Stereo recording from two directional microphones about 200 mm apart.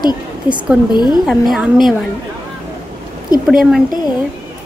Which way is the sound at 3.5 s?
Centre (ahead or behind).